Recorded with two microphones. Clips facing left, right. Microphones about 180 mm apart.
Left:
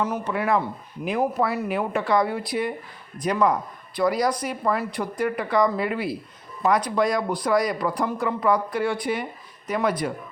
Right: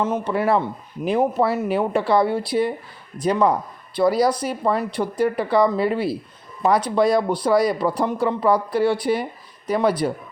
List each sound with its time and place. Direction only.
0.0 s speech: 30° right (ahead or behind)